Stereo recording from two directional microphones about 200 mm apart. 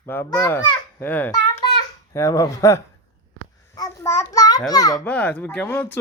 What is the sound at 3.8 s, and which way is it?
A child's voice, 15° left (ahead or behind).